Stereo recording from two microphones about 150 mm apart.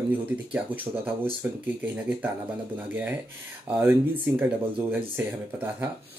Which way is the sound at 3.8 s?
15° right (ahead or behind).